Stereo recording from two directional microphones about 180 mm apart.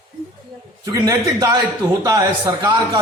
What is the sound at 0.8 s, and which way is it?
A man's voice, 20° right (ahead or behind).